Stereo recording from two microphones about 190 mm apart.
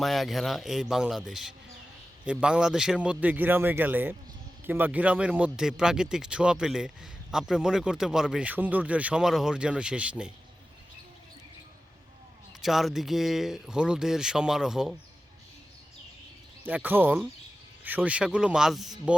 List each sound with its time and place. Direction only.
0.0 s a man's voice: centre (ahead or behind)
12.6 s speech: centre (ahead or behind)
16.6 s a man's voice: 10° right (ahead or behind)